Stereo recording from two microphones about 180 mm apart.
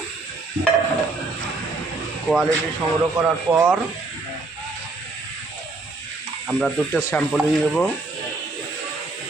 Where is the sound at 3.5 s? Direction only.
10° right (ahead or behind).